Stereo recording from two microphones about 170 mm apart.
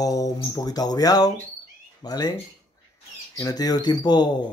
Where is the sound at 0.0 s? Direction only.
20° left (ahead or behind).